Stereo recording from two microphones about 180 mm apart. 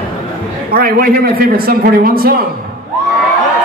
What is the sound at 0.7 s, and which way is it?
A man's voice, 55° right (ahead or behind).